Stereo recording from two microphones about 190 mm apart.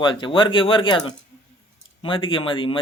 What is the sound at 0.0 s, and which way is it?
Speech, 25° left (ahead or behind).